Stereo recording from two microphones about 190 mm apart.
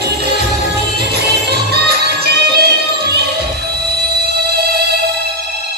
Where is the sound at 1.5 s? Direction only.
60° right (ahead or behind).